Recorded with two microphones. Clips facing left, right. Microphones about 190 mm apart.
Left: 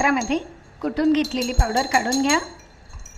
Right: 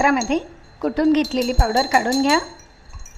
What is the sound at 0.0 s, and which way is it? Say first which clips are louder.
Speech: right 3 dB; 45° right (ahead or behind).